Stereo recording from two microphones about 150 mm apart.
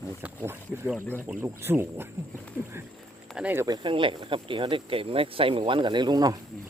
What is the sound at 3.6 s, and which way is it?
Speech, 30° right (ahead or behind).